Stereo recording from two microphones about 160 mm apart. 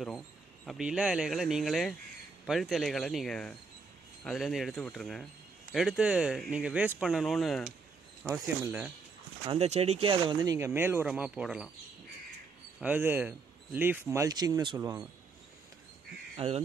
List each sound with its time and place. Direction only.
0.7 s speech: 5° right (ahead or behind)
8.2 s speech: 15° right (ahead or behind)
9.5 s speech: 40° right (ahead or behind); by 11.7 s 5° right (ahead or behind)
12.8 s speech: 15° right (ahead or behind)
16.3 s speech: 40° right (ahead or behind)